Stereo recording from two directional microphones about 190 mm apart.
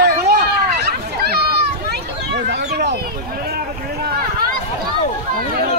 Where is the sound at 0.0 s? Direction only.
55° right (ahead or behind).